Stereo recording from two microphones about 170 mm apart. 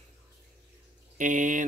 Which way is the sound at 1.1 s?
50° right (ahead or behind).